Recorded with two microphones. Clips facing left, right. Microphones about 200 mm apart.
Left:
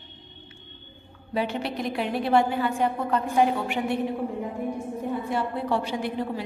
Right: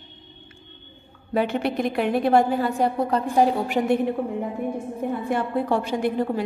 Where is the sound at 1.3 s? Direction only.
55° right (ahead or behind); by 3.8 s 35° right (ahead or behind).